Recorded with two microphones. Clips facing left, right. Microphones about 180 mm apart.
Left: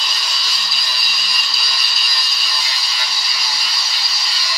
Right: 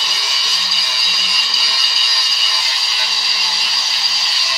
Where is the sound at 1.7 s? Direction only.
25° right (ahead or behind).